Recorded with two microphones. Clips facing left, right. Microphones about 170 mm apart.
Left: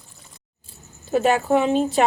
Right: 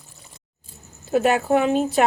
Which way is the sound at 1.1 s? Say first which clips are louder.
Even; 5° right (ahead or behind).